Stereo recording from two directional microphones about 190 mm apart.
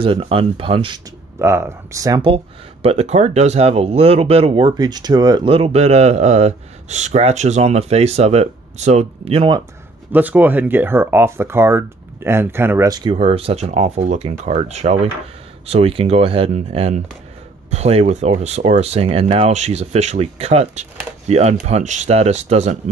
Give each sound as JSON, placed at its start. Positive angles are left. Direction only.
{"t": 0.0, "sound": "speech", "side_deg": -30}
{"t": 1.4, "sound": "speech", "side_deg": -15}
{"t": 2.3, "sound": "speech", "side_deg": -30}
{"t": 10.1, "sound": "speech", "side_deg": -10}